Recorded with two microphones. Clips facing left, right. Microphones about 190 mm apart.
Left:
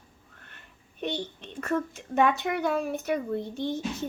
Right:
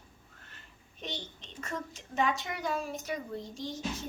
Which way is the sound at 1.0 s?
60° left (ahead or behind).